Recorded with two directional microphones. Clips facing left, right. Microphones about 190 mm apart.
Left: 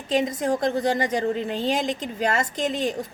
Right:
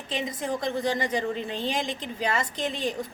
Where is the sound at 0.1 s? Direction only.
45° left (ahead or behind).